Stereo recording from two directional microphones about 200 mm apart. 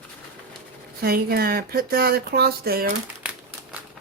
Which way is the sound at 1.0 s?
50° right (ahead or behind).